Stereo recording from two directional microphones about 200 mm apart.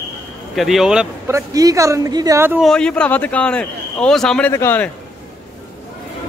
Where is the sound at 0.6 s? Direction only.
Centre (ahead or behind).